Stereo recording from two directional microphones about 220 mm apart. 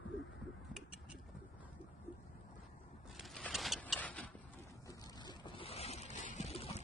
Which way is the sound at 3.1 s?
Centre (ahead or behind).